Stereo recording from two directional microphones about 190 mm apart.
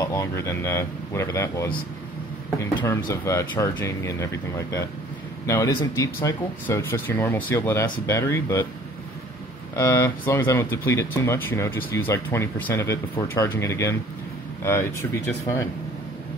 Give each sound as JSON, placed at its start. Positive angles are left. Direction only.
{"t": 0.0, "sound": "speech", "side_deg": 15}
{"t": 3.1, "sound": "speech", "side_deg": 15}
{"t": 9.8, "sound": "speech", "side_deg": 15}